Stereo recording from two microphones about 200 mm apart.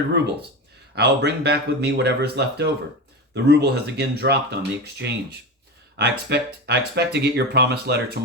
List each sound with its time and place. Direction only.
0.9 s speech: 55° right (ahead or behind)